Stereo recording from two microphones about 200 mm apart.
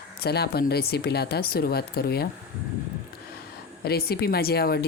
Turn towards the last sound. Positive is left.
turn(degrees=50)  # may be behind; listen again after turning